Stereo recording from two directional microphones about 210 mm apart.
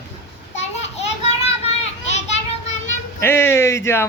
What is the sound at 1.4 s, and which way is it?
Children playing, 30° left (ahead or behind).